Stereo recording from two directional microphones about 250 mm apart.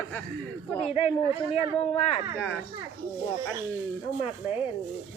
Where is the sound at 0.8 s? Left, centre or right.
Left.